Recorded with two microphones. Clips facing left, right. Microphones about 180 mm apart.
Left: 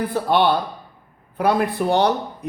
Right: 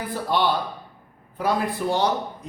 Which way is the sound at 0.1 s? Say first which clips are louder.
Left 3 dB; 60° left (ahead or behind).